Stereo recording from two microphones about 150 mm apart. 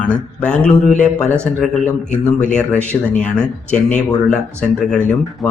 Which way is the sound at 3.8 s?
5° left (ahead or behind).